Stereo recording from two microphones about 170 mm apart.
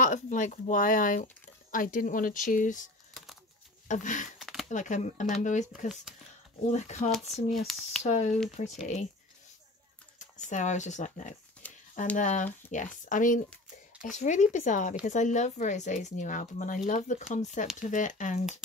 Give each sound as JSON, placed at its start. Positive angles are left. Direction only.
{"t": 0.0, "sound": "speech", "side_deg": 45}
{"t": 4.4, "sound": "a sound", "side_deg": 0}
{"t": 4.6, "sound": "speech", "side_deg": 45}
{"t": 6.7, "sound": "speech", "side_deg": 40}
{"t": 7.1, "sound": "speech", "side_deg": 0}
{"t": 8.0, "sound": "speech", "side_deg": 45}
{"t": 10.1, "sound": "speech", "side_deg": 45}
{"t": 11.6, "sound": "a sound", "side_deg": 10}
{"t": 12.2, "sound": "speech", "side_deg": 45}